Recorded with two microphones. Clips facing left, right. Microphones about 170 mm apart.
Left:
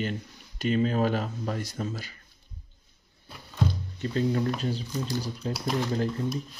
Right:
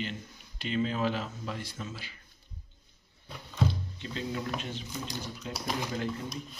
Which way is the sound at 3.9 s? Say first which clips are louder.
Left 9 dB; 45° left (ahead or behind).